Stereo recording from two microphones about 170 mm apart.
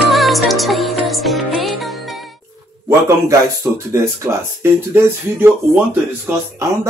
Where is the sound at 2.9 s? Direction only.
15° right (ahead or behind).